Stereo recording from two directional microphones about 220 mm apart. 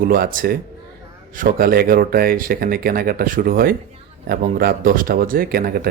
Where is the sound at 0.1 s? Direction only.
40° right (ahead or behind).